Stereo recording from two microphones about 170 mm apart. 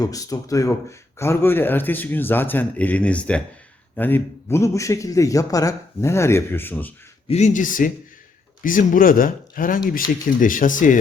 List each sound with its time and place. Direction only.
0.0 s speech: 20° left (ahead or behind)
7.3 s speech: 45° left (ahead or behind)